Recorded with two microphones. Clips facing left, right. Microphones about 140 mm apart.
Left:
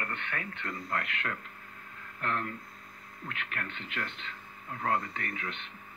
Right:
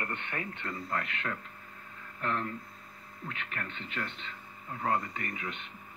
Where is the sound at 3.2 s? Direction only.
Centre (ahead or behind).